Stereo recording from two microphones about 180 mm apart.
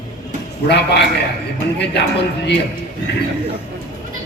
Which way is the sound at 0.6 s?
65° left (ahead or behind).